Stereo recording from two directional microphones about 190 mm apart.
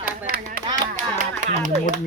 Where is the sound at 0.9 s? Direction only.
45° right (ahead or behind).